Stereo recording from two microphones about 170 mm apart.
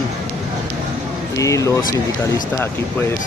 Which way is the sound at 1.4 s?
20° left (ahead or behind).